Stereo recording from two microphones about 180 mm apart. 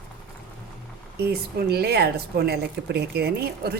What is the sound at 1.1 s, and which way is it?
Speech, 60° right (ahead or behind).